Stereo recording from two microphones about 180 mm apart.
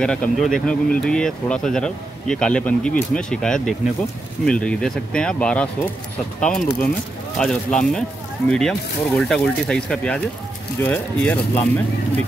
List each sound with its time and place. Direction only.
0.0 s speech: 5° left (ahead or behind)